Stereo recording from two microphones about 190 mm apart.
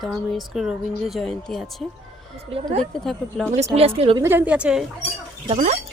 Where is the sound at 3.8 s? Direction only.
30° right (ahead or behind).